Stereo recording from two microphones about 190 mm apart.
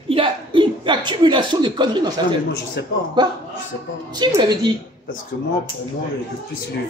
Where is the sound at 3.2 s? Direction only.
20° right (ahead or behind).